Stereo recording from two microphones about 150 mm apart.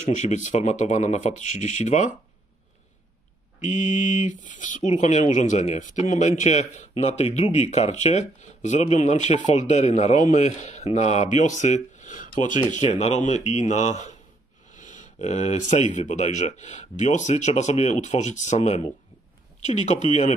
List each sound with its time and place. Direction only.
0.0 s speech: 55° left (ahead or behind)
3.6 s speech: 55° left (ahead or behind)